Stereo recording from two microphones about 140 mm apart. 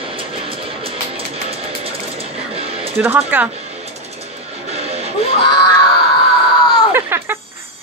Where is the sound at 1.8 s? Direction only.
45° right (ahead or behind).